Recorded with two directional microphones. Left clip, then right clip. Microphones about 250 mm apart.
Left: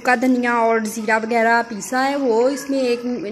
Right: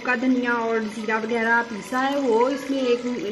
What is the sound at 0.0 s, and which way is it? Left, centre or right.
A woman's voice, left.